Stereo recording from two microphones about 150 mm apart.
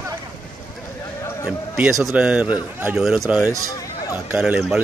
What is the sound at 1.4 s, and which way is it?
A man's voice, 5° right (ahead or behind).